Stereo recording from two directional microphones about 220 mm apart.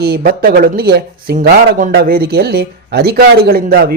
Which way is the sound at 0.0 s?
45° right (ahead or behind).